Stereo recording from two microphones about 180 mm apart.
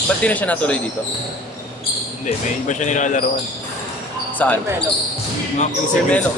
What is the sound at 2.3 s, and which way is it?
Speech, 45° left (ahead or behind).